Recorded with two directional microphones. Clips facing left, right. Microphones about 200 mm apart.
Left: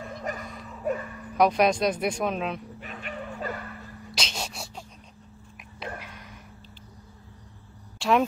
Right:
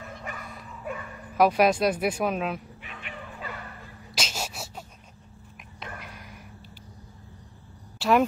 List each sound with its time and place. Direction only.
0.3 s a sound: 40° left (ahead or behind)
0.9 s bow-wow: 40° left (ahead or behind)
1.3 s speech: 5° right (ahead or behind)
2.8 s bow-wow: 40° left (ahead or behind)
4.2 s a sound: 5° right (ahead or behind)
8.0 s cricket: 5° right (ahead or behind)